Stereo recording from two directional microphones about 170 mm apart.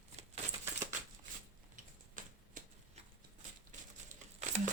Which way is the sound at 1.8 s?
50° right (ahead or behind).